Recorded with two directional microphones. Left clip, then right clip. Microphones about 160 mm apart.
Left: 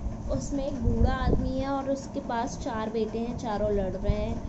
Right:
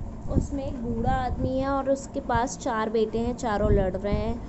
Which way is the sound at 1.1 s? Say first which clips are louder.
Right 6 dB; 25° right (ahead or behind).